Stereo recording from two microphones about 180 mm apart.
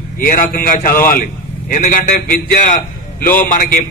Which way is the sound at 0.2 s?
55° left (ahead or behind).